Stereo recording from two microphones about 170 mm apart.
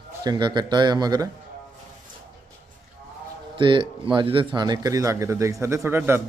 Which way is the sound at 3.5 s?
30° right (ahead or behind).